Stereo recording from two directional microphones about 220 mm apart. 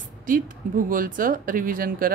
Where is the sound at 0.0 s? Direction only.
40° right (ahead or behind).